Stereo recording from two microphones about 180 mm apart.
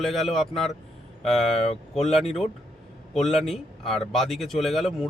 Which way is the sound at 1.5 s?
35° left (ahead or behind).